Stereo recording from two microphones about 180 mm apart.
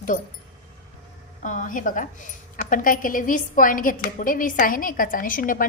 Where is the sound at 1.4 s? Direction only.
45° left (ahead or behind).